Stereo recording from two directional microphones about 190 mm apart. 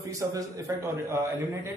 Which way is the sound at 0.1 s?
15° right (ahead or behind).